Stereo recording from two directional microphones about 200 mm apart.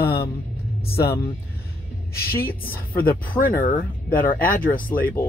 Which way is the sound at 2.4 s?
45° left (ahead or behind).